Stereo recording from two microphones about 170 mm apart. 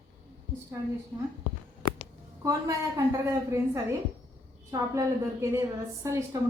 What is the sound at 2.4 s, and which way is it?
A woman's voice, 20° right (ahead or behind).